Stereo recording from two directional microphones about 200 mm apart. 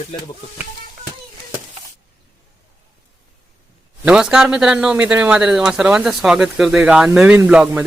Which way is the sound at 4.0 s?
5° right (ahead or behind).